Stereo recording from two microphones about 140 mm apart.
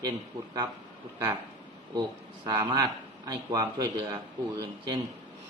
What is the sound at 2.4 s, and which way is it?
Speech, 30° right (ahead or behind).